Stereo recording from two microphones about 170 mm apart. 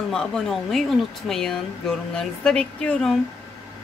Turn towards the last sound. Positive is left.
turn(degrees=5)  # may be behind; listen again after turning